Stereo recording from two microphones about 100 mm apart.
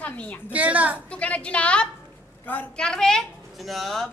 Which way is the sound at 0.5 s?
15° right (ahead or behind).